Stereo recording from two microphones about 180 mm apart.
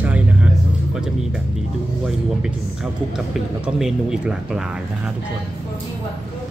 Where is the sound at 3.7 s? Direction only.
5° right (ahead or behind).